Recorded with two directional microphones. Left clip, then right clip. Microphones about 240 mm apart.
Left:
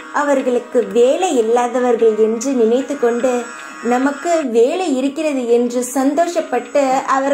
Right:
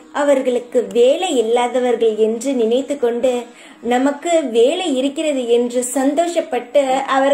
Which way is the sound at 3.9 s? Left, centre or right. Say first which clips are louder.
Even; centre.